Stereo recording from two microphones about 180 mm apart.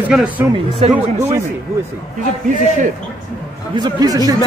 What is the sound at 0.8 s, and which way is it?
Speech, 40° right (ahead or behind).